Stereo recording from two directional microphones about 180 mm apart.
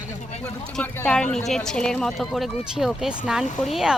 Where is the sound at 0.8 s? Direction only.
5° left (ahead or behind).